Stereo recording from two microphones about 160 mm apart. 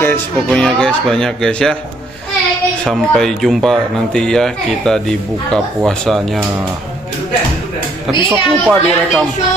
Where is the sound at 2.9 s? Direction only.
5° left (ahead or behind).